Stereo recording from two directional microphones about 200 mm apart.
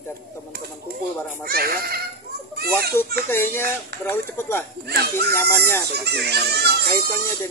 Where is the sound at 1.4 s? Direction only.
50° right (ahead or behind).